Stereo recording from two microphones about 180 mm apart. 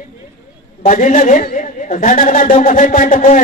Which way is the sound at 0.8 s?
45° left (ahead or behind).